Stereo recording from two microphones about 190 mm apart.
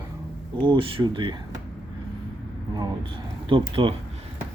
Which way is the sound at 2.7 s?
25° right (ahead or behind).